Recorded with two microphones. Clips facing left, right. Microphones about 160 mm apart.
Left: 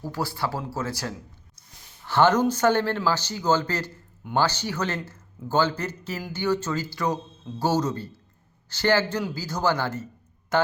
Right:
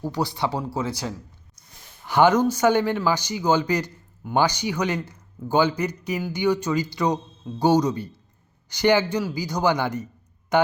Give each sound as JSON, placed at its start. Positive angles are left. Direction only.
{"t": 0.0, "sound": "speech", "side_deg": -20}
{"t": 2.0, "sound": "a man's voice", "side_deg": -15}